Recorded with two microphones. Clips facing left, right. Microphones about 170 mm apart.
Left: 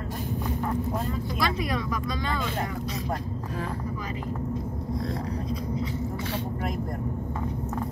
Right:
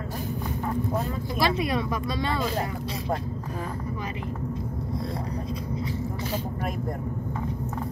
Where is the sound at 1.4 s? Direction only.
30° right (ahead or behind).